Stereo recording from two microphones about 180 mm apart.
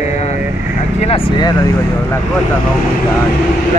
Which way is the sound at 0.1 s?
40° left (ahead or behind).